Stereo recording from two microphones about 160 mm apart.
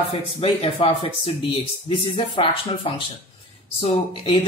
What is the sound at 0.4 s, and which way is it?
Speech, 35° left (ahead or behind).